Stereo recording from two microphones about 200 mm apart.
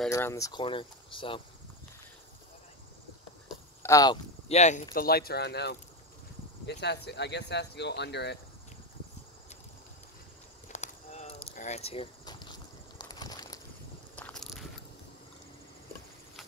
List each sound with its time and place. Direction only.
0.1 s speech: 15° left (ahead or behind)
3.8 s speech: 20° left (ahead or behind)
4.5 s speech: 35° left (ahead or behind)
4.9 s speech: 50° left (ahead or behind)
10.7 s a sound: 35° left (ahead or behind); by 13.6 s 20° left (ahead or behind)
14.1 s a sound: 5° left (ahead or behind)